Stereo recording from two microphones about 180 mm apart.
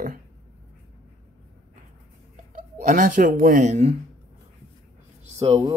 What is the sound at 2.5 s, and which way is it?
Speech, 45° right (ahead or behind).